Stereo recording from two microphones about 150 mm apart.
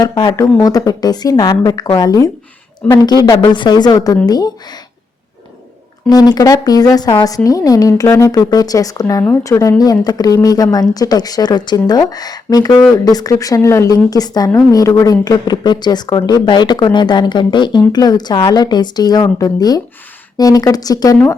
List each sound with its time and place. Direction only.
0.0 s a woman's voice: 30° left (ahead or behind)
6.1 s a woman's voice: 25° left (ahead or behind)